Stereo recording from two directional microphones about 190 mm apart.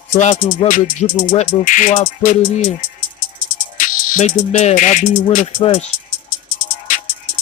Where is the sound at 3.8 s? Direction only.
40° left (ahead or behind).